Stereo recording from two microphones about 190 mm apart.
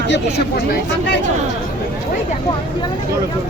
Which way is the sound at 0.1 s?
55° left (ahead or behind).